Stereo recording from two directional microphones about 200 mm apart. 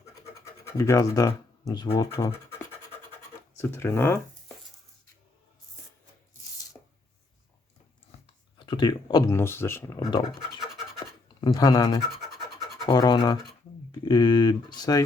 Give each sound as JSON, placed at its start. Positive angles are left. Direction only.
{"t": 0.4, "sound": "speech", "side_deg": 15}
{"t": 3.6, "sound": "speech", "side_deg": 10}
{"t": 8.5, "sound": "speech", "side_deg": 25}
{"t": 11.3, "sound": "speech", "side_deg": 20}